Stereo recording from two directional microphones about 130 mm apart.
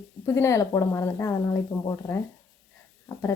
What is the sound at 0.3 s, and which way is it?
Speech, 20° left (ahead or behind).